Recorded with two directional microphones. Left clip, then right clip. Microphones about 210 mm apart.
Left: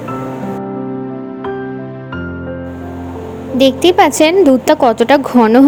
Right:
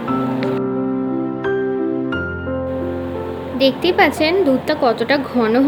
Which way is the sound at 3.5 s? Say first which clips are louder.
Left 5 dB; 45° left (ahead or behind).